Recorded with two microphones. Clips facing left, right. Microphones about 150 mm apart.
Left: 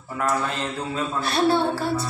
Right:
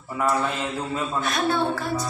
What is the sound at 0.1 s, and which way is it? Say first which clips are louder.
Speech: right 1 dB; 5° right (ahead or behind).